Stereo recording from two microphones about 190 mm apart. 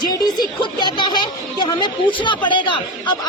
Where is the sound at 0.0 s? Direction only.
20° left (ahead or behind).